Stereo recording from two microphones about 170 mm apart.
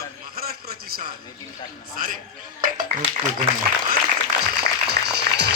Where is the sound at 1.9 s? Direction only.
55° right (ahead or behind).